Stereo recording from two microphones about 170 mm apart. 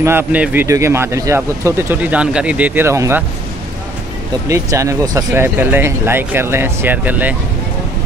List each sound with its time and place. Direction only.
0.0 s speech: 15° right (ahead or behind)
4.5 s speech: 20° right (ahead or behind)